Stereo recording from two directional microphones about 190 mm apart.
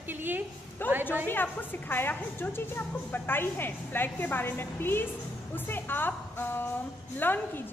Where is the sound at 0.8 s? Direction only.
10° left (ahead or behind).